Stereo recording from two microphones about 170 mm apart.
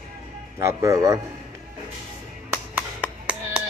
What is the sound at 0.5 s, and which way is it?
Speech, 20° right (ahead or behind).